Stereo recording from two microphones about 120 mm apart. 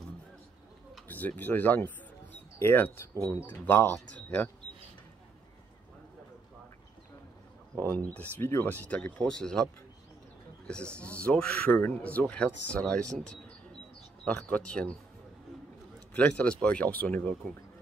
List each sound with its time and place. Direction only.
1.0 s speech: 15° left (ahead or behind)
7.8 s speech: 10° left (ahead or behind)
11.2 s speech: 15° left (ahead or behind)
16.2 s speech: 10° left (ahead or behind)